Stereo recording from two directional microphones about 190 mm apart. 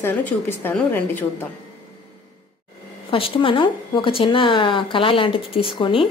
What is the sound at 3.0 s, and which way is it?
Speech, 30° left (ahead or behind).